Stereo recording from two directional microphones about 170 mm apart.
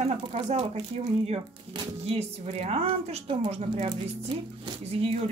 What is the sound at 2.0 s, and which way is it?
A woman's voice, 40° right (ahead or behind).